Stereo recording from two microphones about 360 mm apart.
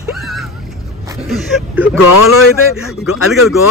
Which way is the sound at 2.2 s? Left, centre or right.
Left.